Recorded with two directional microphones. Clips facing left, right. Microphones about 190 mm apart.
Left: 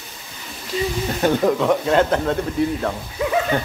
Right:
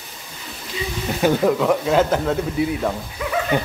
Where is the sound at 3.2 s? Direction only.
25° left (ahead or behind).